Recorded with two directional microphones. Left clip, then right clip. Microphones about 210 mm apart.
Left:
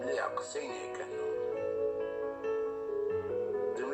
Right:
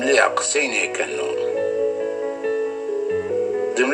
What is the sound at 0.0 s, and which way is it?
Speech, 50° right (ahead or behind).